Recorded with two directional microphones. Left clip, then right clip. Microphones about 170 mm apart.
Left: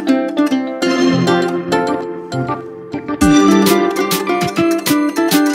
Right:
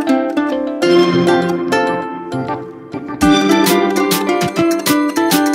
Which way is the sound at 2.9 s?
Centre (ahead or behind).